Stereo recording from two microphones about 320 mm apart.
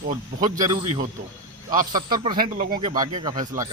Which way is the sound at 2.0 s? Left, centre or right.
Centre.